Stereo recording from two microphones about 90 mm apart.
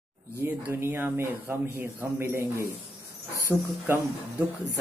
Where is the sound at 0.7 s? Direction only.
25° right (ahead or behind).